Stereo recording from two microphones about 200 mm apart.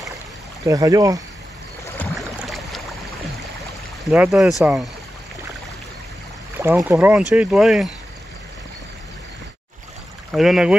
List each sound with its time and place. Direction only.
0.7 s speech: 15° right (ahead or behind)
2.0 s boat: centre (ahead or behind)
4.0 s speech: centre (ahead or behind)
6.6 s speech: 15° right (ahead or behind)
10.3 s speech: centre (ahead or behind)